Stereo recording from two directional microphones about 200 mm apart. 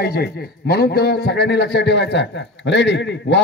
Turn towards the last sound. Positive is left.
turn(degrees=60)  # may be behind; listen again after turning